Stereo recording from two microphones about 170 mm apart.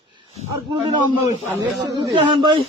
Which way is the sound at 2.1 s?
30° right (ahead or behind).